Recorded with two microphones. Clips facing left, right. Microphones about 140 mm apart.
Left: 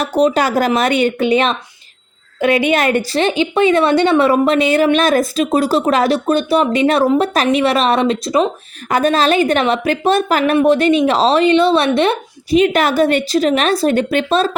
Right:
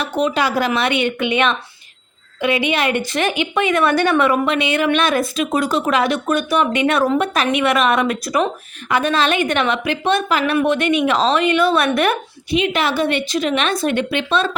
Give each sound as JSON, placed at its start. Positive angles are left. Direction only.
{"t": 0.0, "sound": "a woman's voice", "side_deg": 35}
{"t": 2.4, "sound": "a woman's voice", "side_deg": 45}
{"t": 8.9, "sound": "a woman's voice", "side_deg": 40}
{"t": 12.5, "sound": "a woman's voice", "side_deg": 40}